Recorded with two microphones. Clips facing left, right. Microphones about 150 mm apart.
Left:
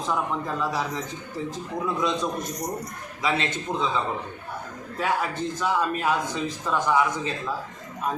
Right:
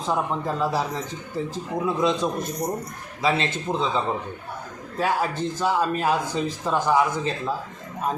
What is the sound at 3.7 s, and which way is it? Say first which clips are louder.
Speech: right 3 dB; 10° right (ahead or behind).